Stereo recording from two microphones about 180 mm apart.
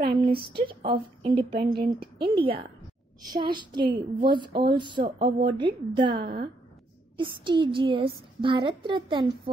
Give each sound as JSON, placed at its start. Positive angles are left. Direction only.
{"t": 0.0, "sound": "a sound", "side_deg": -30}
{"t": 0.6, "sound": "a woman's voice", "side_deg": -30}
{"t": 5.2, "sound": "a woman's voice", "side_deg": -70}
{"t": 5.6, "sound": "a woman's voice", "side_deg": -25}
{"t": 6.1, "sound": "a woman's voice", "side_deg": -60}
{"t": 7.2, "sound": "a woman's voice", "side_deg": -25}